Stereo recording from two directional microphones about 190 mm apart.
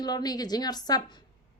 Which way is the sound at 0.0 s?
20° left (ahead or behind).